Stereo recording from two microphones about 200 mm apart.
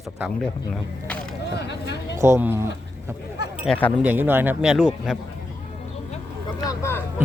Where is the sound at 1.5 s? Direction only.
60° left (ahead or behind).